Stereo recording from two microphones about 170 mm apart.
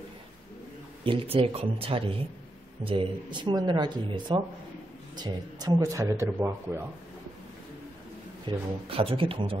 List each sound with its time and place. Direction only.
1.0 s speech: 30° right (ahead or behind); by 6.8 s 15° right (ahead or behind)
8.5 s speech: 35° right (ahead or behind)